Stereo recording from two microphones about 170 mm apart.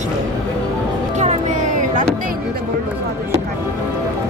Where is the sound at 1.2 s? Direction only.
45° right (ahead or behind).